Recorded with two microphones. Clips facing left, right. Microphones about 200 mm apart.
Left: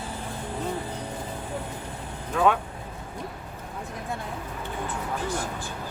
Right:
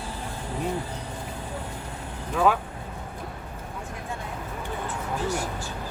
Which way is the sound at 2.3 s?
Centre (ahead or behind).